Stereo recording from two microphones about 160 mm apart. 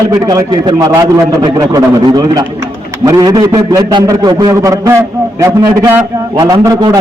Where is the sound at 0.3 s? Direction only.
25° right (ahead or behind).